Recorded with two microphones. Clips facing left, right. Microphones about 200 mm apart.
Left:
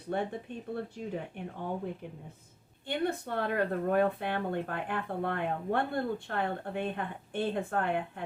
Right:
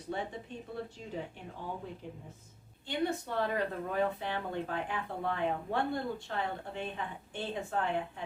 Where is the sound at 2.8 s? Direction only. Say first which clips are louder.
Left 1 dB; 55° left (ahead or behind).